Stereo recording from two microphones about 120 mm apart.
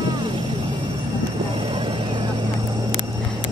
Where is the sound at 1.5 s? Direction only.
50° right (ahead or behind).